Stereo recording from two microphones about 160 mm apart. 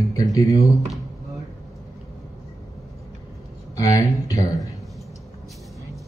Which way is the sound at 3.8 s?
20° left (ahead or behind).